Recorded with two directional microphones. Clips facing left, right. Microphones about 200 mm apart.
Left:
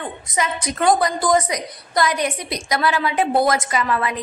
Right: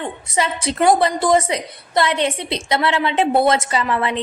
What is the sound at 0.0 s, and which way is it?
A woman's voice, 30° right (ahead or behind).